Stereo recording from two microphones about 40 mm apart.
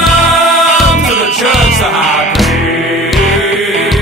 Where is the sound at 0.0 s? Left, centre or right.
Centre.